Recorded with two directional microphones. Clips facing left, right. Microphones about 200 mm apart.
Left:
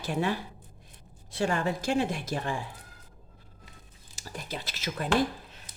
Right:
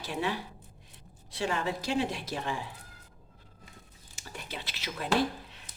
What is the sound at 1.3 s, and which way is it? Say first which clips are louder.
Speech: left 3 dB; 50° left (ahead or behind).